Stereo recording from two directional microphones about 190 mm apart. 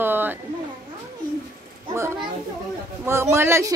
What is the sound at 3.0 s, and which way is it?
Speech, 15° right (ahead or behind).